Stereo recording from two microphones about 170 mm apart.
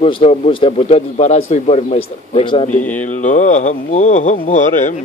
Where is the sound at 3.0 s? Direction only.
45° left (ahead or behind).